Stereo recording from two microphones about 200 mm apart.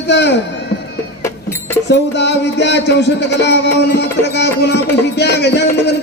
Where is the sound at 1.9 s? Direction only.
60° left (ahead or behind).